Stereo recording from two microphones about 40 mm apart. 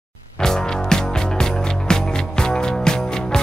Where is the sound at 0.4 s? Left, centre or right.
Centre.